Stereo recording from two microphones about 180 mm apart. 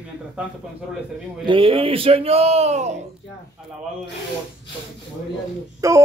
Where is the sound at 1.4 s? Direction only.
30° right (ahead or behind).